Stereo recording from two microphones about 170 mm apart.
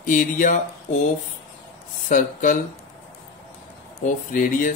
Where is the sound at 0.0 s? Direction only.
50° left (ahead or behind).